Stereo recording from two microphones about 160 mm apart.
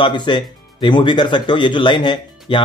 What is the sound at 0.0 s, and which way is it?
A man's voice, 30° left (ahead or behind).